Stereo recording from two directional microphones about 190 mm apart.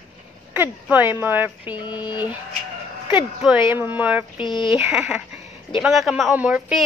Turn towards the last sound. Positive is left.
turn(degrees=-5)  # may be behind; listen again after turning